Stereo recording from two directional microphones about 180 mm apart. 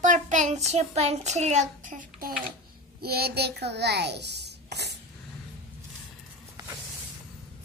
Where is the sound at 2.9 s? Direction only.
60° right (ahead or behind).